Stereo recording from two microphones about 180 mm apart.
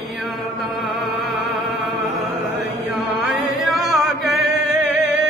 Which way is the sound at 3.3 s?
Centre (ahead or behind).